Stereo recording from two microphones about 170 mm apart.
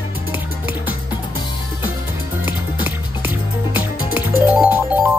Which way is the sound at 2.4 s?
10° right (ahead or behind).